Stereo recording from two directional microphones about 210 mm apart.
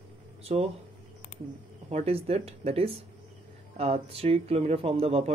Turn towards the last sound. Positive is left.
turn(degrees=-30)  # may be behind; listen again after turning